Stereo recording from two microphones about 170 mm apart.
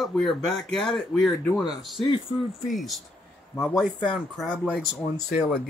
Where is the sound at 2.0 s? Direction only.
30° left (ahead or behind).